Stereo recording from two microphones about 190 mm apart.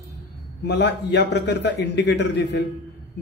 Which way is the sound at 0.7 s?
65° left (ahead or behind).